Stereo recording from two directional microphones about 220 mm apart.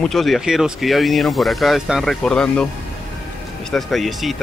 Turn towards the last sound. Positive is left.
turn(degrees=0)  # may be behind; listen again after turning